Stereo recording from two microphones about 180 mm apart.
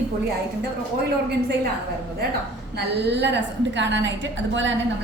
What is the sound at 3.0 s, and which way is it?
A woman's voice, 75° right (ahead or behind).